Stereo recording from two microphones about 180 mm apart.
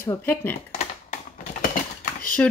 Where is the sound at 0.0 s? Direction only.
15° left (ahead or behind).